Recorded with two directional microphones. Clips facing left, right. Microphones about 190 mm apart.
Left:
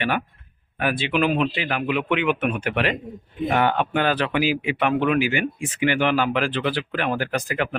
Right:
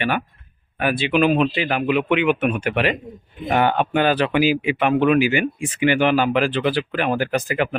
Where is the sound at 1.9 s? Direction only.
10° right (ahead or behind).